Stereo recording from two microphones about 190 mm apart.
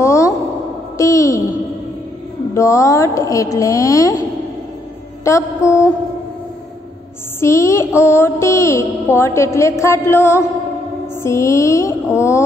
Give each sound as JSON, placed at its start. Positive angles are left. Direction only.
{"t": 0.0, "sound": "a sound", "side_deg": 15}
{"t": 2.5, "sound": "mantra", "side_deg": 15}
{"t": 5.2, "sound": "mantra", "side_deg": 15}
{"t": 7.3, "sound": "mantra", "side_deg": 15}